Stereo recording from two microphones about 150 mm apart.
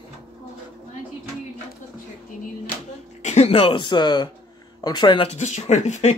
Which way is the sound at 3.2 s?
50° left (ahead or behind).